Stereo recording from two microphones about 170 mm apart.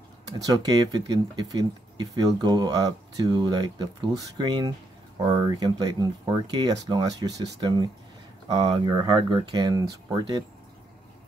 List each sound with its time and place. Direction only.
0.4 s speech: 20° right (ahead or behind)